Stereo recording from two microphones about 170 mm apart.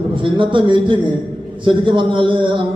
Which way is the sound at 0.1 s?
30° right (ahead or behind).